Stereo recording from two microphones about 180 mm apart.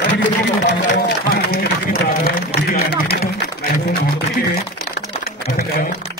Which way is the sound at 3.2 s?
60° left (ahead or behind).